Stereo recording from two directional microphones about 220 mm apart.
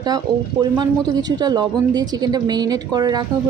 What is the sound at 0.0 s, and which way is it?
A woman's voice, 20° right (ahead or behind).